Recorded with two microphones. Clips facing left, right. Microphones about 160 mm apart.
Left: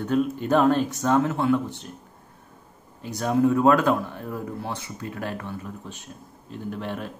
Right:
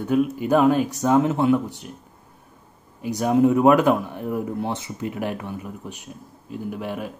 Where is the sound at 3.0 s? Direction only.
15° right (ahead or behind).